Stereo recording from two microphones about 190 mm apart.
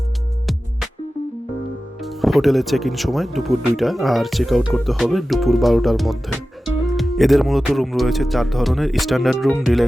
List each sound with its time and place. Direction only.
2.0 s speech: centre (ahead or behind)